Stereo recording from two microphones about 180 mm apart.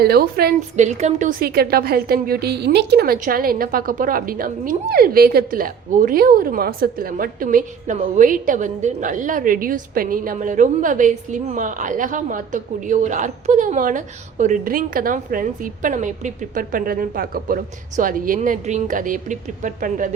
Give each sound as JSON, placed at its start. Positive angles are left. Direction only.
{"t": 0.0, "sound": "a woman's voice", "side_deg": -60}
{"t": 0.8, "sound": "a woman's voice", "side_deg": -40}